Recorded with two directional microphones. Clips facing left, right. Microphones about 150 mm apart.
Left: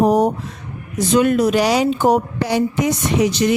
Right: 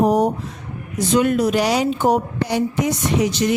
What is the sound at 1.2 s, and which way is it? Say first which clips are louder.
A woman's voice: left 2 dB; 90° left.